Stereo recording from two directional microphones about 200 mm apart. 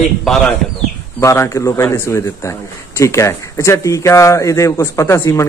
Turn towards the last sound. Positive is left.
turn(degrees=15)  # may be behind; listen again after turning